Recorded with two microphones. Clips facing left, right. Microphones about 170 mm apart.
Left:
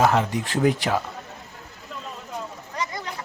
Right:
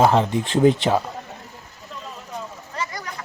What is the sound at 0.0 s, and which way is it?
Speech, 25° right (ahead or behind).